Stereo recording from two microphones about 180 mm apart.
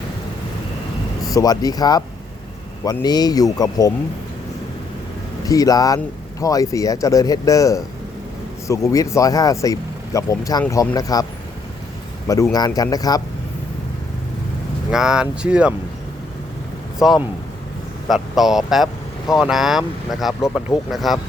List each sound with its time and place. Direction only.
1.2 s speech: 20° left (ahead or behind)
5.5 s speech: 20° left (ahead or behind)
12.5 s speech: 20° left (ahead or behind)
14.8 s speech: 5° right (ahead or behind)
17.0 s speech: 5° right (ahead or behind)